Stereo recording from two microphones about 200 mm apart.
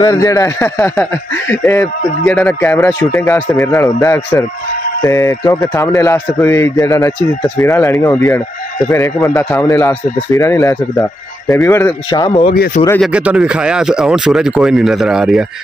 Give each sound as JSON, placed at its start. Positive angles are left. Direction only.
{"t": 0.0, "sound": "speech", "side_deg": 15}
{"t": 13.0, "sound": "speech", "side_deg": -5}